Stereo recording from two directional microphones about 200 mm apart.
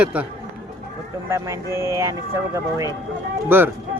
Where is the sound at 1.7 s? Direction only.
15° right (ahead or behind).